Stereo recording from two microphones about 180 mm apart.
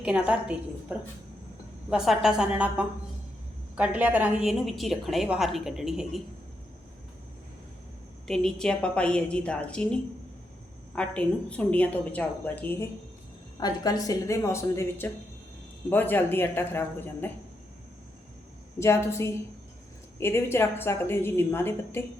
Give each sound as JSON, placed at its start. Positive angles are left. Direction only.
{"t": 0.0, "sound": "a woman's voice", "side_deg": -5}
{"t": 8.3, "sound": "a woman's voice", "side_deg": 5}
{"t": 13.6, "sound": "a woman's voice", "side_deg": 20}
{"t": 18.8, "sound": "a woman's voice", "side_deg": 15}